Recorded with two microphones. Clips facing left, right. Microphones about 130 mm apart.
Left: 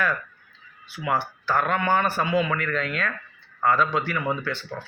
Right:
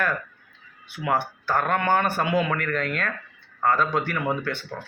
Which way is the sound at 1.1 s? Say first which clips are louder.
Even; 50° right (ahead or behind).